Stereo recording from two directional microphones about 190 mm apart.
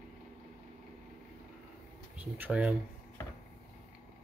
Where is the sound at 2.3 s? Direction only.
10° right (ahead or behind).